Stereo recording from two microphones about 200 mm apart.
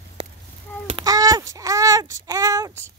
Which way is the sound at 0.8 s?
20° right (ahead or behind).